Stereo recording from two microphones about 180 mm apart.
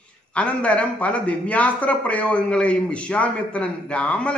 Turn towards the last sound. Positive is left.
turn(degrees=5)  # may be behind; listen again after turning